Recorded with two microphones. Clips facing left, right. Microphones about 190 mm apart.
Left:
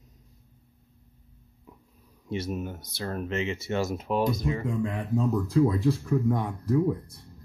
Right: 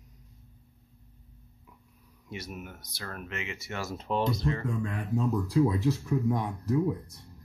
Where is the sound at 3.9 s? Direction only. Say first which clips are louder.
Left 3 dB; 10° left (ahead or behind).